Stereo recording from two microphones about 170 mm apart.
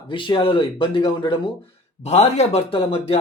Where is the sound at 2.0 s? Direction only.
40° left (ahead or behind).